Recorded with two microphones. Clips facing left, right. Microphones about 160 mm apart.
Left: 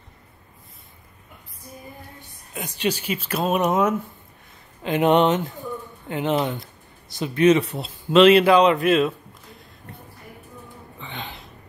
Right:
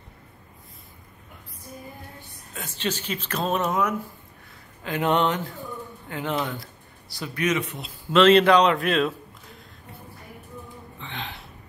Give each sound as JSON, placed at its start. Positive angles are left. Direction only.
{"t": 2.5, "sound": "speech", "side_deg": 15}
{"t": 8.1, "sound": "speech", "side_deg": 10}
{"t": 11.0, "sound": "hiccup", "side_deg": 0}